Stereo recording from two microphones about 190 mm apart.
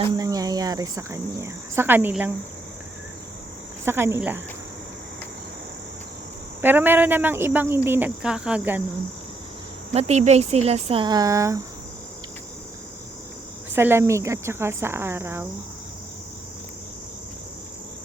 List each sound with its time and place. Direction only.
0.0 s cricket: 20° right (ahead or behind)
3.8 s cricket: 15° right (ahead or behind)
6.6 s cricket: 10° right (ahead or behind)
9.9 s speech: 35° right (ahead or behind); by 11.6 s 15° right (ahead or behind)
13.7 s cricket: 10° right (ahead or behind)